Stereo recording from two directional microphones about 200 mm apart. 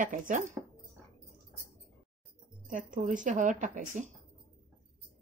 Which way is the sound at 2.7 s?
40° right (ahead or behind).